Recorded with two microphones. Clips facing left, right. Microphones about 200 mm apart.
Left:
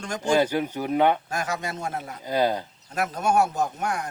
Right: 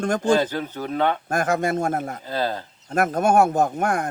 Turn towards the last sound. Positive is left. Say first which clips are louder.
# right 6 dB
turn(degrees=-50)  # may be behind; listen again after turning